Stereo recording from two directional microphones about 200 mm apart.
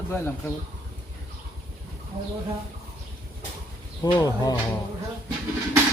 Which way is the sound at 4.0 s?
20° left (ahead or behind).